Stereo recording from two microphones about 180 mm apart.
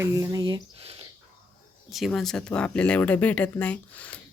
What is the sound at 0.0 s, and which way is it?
Speech, 15° right (ahead or behind).